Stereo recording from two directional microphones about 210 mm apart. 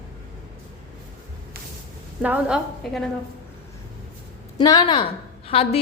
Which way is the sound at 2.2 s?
5° right (ahead or behind).